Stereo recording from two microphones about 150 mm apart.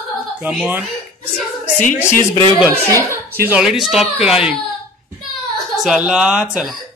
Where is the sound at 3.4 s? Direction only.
5° right (ahead or behind).